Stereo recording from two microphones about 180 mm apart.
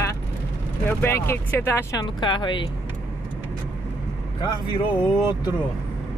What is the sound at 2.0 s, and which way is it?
Speech, 25° left (ahead or behind).